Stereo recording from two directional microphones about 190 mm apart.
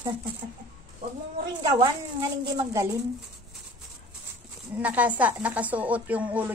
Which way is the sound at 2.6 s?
15° right (ahead or behind).